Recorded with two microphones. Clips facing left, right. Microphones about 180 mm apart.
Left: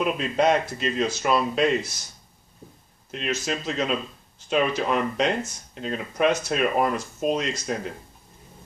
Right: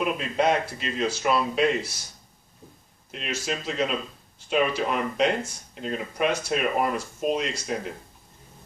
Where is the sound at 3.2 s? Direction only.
5° right (ahead or behind).